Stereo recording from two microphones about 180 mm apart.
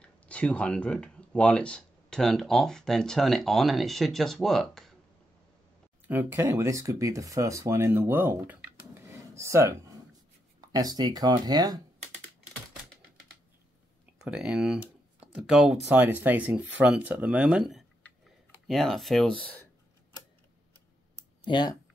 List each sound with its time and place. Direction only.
0.0 s speech: 5° left (ahead or behind)
6.0 s speech: 10° right (ahead or behind)
14.1 s speech: 5° right (ahead or behind)
21.5 s speech: 25° left (ahead or behind)